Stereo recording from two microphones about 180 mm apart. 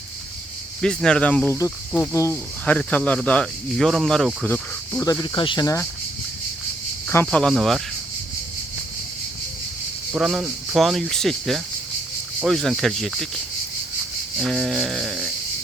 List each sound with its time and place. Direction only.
0.8 s speech: 5° left (ahead or behind)
5.2 s speech: 25° left (ahead or behind)
7.1 s speech: 10° left (ahead or behind)
10.1 s speech: centre (ahead or behind)
14.3 s speech: centre (ahead or behind)